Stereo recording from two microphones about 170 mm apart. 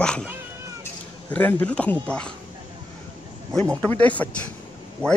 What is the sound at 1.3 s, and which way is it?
Speech, 10° left (ahead or behind).